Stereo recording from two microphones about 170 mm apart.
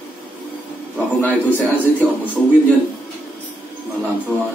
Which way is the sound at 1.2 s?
10° left (ahead or behind).